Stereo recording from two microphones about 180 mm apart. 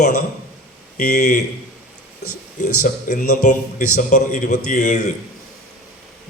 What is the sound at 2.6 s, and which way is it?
Speech, 45° left (ahead or behind).